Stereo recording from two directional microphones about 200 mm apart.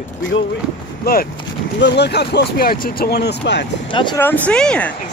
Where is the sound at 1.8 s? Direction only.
55° left (ahead or behind).